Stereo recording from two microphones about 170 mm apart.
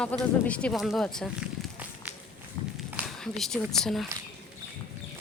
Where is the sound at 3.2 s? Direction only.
5° left (ahead or behind).